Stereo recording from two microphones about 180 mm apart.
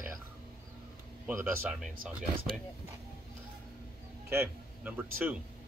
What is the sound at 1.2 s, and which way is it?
Speech, 10° right (ahead or behind).